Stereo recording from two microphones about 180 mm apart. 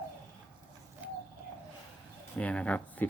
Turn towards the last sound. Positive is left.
turn(degrees=10)  # may be behind; listen again after turning